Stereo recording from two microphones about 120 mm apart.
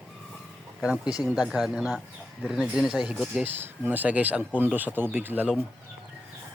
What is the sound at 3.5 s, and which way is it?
Speech, 15° right (ahead or behind).